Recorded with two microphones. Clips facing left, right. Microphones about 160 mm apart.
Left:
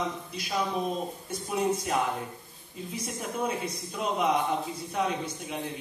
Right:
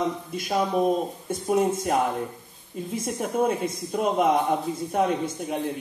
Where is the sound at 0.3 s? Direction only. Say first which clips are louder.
Right 6 dB; 50° right (ahead or behind).